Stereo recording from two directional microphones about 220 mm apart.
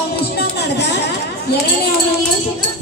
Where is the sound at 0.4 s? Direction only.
50° left (ahead or behind).